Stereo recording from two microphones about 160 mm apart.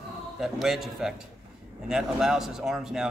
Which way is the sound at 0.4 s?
Centre (ahead or behind).